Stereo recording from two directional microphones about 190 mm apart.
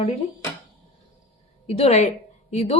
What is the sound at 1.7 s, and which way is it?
A woman's voice, 35° left (ahead or behind).